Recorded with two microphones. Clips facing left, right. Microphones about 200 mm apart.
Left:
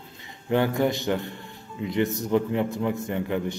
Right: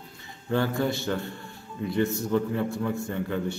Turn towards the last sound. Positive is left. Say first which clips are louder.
# left 2 dB
turn(degrees=15)  # may be behind; listen again after turning